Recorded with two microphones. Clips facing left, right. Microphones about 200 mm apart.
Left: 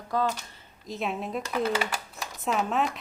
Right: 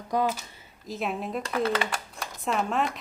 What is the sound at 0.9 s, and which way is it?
Speech, centre (ahead or behind).